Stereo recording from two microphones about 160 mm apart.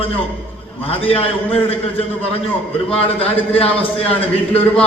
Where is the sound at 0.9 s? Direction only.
35° left (ahead or behind).